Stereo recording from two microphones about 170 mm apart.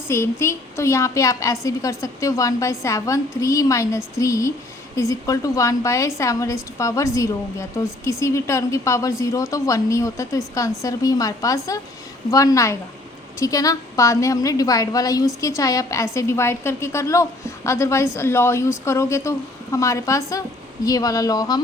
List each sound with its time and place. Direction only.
0.1 s a woman's voice: 15° left (ahead or behind)